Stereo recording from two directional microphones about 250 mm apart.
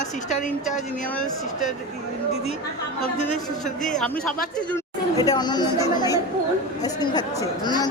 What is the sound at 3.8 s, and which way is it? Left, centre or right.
Speech, centre.